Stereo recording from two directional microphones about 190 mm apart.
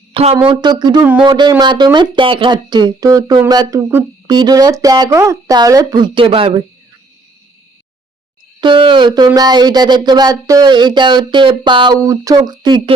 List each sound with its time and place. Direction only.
0.1 s a sound: 30° right (ahead or behind)
0.4 s speech: 20° right (ahead or behind)
8.6 s speech: 25° right (ahead or behind)